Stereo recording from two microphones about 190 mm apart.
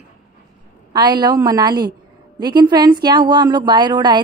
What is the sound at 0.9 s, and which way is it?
A woman's voice, 20° right (ahead or behind).